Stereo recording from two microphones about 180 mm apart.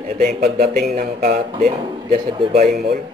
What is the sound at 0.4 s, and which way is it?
Speech, 45° right (ahead or behind).